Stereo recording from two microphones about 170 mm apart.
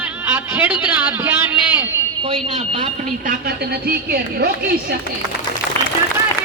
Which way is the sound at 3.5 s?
65° right (ahead or behind).